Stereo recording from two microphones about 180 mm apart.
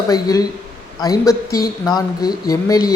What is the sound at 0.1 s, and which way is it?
Speech, 20° left (ahead or behind).